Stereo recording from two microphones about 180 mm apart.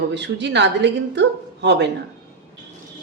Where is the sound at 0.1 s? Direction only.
75° right (ahead or behind).